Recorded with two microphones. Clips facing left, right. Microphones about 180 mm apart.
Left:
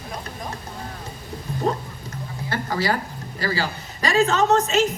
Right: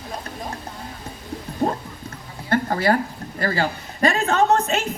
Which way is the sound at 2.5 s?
55° right (ahead or behind).